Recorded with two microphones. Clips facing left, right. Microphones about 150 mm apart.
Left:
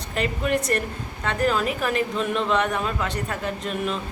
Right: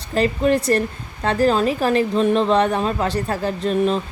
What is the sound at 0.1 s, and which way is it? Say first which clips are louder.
Speech: right 7 dB; 35° right (ahead or behind).